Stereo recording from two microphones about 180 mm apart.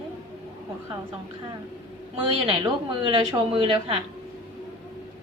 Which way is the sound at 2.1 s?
25° right (ahead or behind).